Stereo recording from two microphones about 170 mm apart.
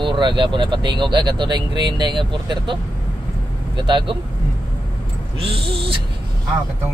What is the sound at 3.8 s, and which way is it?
Speech, 30° right (ahead or behind).